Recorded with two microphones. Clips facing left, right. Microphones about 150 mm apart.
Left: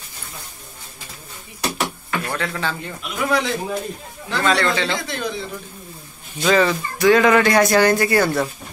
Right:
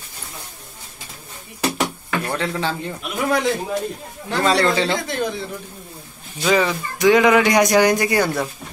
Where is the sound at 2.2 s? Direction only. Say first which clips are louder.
Right 2 dB; 20° right (ahead or behind).